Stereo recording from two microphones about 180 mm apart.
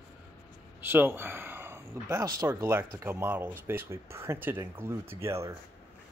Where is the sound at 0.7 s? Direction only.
10° right (ahead or behind).